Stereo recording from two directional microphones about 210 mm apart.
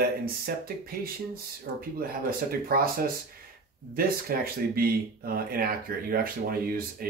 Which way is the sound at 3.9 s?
45° right (ahead or behind).